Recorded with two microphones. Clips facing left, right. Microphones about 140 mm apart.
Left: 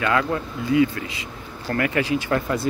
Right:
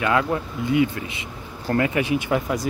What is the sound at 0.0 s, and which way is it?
Speech, 15° right (ahead or behind).